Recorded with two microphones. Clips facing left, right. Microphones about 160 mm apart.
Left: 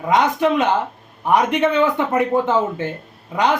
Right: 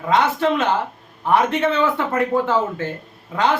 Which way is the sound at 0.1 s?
15° left (ahead or behind).